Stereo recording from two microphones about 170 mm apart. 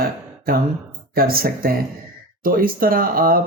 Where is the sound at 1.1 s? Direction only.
60° right (ahead or behind).